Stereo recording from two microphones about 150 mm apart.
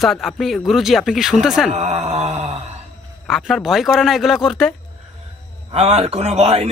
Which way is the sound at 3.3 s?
Centre (ahead or behind).